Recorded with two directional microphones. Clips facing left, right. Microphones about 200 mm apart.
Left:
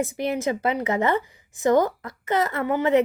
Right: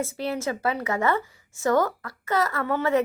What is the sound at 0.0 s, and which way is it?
A woman's voice, 15° left (ahead or behind).